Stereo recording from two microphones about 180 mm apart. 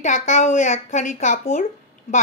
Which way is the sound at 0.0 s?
45° left (ahead or behind).